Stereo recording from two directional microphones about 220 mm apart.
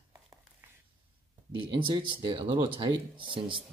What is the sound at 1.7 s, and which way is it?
Speech, 20° right (ahead or behind).